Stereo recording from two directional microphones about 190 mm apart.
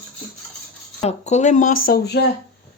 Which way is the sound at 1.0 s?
35° left (ahead or behind).